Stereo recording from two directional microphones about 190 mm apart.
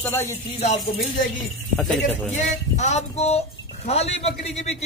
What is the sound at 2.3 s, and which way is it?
Speech, 35° left (ahead or behind).